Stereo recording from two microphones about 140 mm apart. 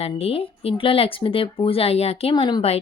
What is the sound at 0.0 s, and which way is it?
Speech, 45° left (ahead or behind).